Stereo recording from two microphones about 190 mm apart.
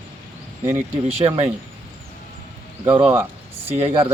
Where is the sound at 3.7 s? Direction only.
35° right (ahead or behind).